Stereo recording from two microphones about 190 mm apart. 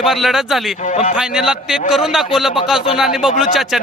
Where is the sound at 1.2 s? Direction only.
5° right (ahead or behind).